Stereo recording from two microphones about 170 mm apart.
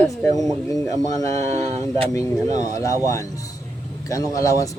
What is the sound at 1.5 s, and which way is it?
Speech, 40° right (ahead or behind).